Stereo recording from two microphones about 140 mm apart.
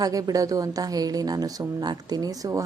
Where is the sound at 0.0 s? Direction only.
25° right (ahead or behind).